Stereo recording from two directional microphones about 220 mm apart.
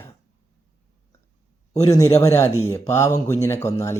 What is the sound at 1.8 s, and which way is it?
Speech, 15° left (ahead or behind).